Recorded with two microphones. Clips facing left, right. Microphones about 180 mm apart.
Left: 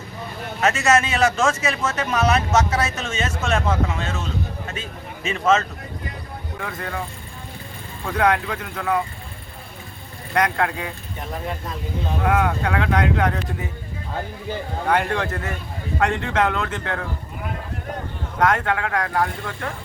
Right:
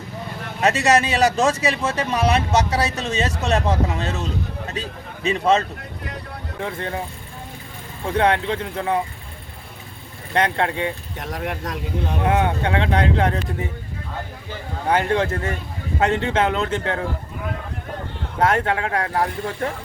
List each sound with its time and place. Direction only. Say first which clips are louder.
0.6 s a man's voice: right 1 dB; 35° right (ahead or behind)
8.0 s speech: right 1 dB; 30° right (ahead or behind)
10.3 s speech: right 1 dB; 30° right (ahead or behind)
11.2 s speech: right 1 dB; 75° right (ahead or behind)
12.3 s speech: right 1 dB; 25° right (ahead or behind)
14.8 s speech: right 3 dB; 25° right (ahead or behind)
18.3 s speech: right 1 dB; 30° right (ahead or behind)